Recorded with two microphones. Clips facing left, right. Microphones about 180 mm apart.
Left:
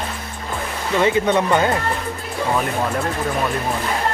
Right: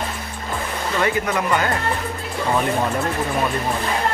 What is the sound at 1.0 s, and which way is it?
Speech, 25° left (ahead or behind).